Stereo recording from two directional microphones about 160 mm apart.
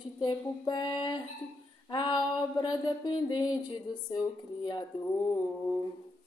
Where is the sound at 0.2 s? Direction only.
25° left (ahead or behind).